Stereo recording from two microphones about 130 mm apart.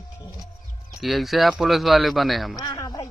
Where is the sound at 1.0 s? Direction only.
Centre (ahead or behind).